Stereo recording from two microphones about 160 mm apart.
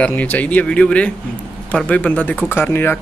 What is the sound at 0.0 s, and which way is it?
Speech, 10° left (ahead or behind).